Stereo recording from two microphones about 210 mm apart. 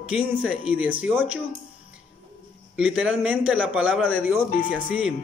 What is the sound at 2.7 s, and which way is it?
Speech, 5° right (ahead or behind).